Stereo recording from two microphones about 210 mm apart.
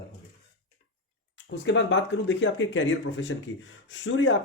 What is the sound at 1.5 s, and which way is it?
Speech, 60° left (ahead or behind).